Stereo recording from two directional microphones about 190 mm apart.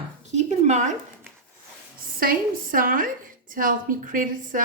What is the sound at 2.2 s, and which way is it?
A woman's voice, 50° right (ahead or behind).